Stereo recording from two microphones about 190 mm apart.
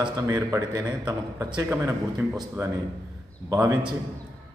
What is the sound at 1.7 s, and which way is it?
A man's voice, 10° right (ahead or behind).